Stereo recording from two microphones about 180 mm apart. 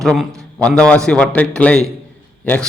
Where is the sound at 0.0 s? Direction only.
Centre (ahead or behind).